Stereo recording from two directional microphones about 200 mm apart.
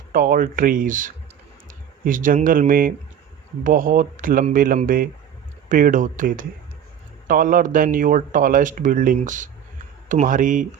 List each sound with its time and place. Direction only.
0.1 s speech: 45° right (ahead or behind)